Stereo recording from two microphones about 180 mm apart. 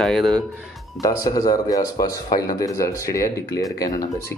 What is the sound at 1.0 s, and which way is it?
Speech, 20° left (ahead or behind).